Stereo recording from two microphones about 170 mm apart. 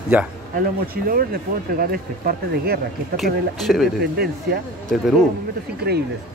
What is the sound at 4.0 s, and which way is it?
Speech, 65° right (ahead or behind).